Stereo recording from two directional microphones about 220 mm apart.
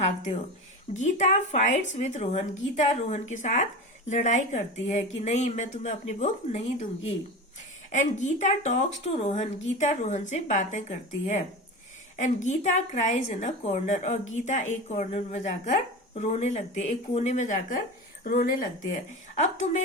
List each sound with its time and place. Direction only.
0.0 s a woman's voice: 30° left (ahead or behind)
7.9 s a woman's voice: 35° left (ahead or behind)